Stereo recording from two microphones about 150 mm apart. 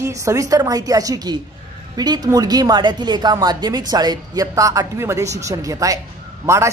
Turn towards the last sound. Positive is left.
turn(degrees=-20)  # may be behind; listen again after turning